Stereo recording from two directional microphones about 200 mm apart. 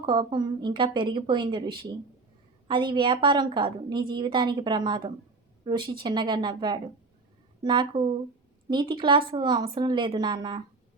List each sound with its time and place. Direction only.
0.0 s a woman's voice: 20° right (ahead or behind)